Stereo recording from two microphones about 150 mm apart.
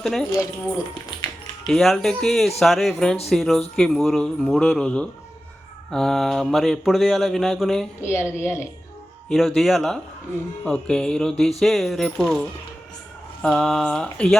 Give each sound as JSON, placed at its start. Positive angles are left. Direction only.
{"t": 0.0, "sound": "speech", "side_deg": 0}
{"t": 1.6, "sound": "speech", "side_deg": 0}
{"t": 8.0, "sound": "speech", "side_deg": 15}
{"t": 9.6, "sound": "speech", "side_deg": 0}